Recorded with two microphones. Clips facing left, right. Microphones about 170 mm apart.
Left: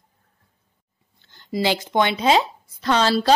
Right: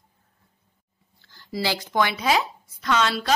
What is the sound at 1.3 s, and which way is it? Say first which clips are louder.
A woman's voice: left 5 dB; 20° left (ahead or behind).